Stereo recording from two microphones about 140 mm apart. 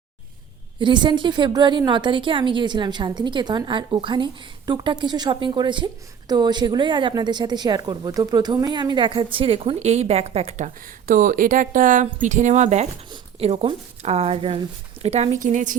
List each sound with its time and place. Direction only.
0.8 s a woman's voice: 35° right (ahead or behind); by 10.7 s 50° right (ahead or behind)
11.0 s a woman's voice: 70° right (ahead or behind)